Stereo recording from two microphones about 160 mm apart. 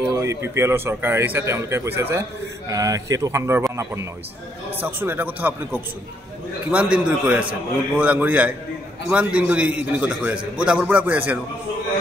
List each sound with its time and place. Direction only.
0.1 s a man's voice: 20° right (ahead or behind)